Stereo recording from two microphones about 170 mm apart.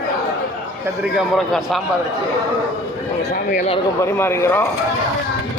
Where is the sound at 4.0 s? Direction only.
15° left (ahead or behind).